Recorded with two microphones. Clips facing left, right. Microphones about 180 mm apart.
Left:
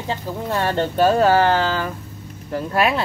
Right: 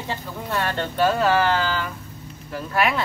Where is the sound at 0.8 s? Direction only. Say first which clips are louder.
Left 5 dB; 40° left (ahead or behind).